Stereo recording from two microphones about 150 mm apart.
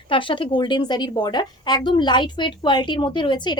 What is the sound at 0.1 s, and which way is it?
A woman's voice, 35° left (ahead or behind).